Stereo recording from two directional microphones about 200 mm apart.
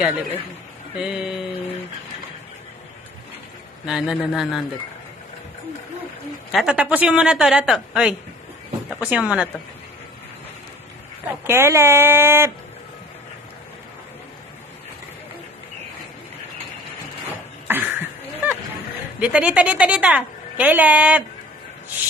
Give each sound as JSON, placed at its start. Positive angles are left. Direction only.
{"t": 0.9, "sound": "speech", "side_deg": -5}
{"t": 3.8, "sound": "speech", "side_deg": -5}
{"t": 6.5, "sound": "speech", "side_deg": -5}
{"t": 11.4, "sound": "a woman's voice", "side_deg": -10}
{"t": 17.6, "sound": "cough", "side_deg": -10}
{"t": 19.1, "sound": "a woman's voice", "side_deg": -5}